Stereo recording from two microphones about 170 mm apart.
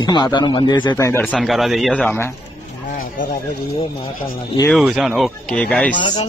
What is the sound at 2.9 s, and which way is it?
Speech, 55° left (ahead or behind).